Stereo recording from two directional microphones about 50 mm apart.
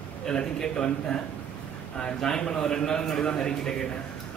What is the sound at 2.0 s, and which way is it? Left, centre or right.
A man's voice, centre.